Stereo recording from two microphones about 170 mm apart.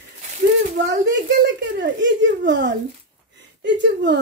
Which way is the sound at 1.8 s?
90° right.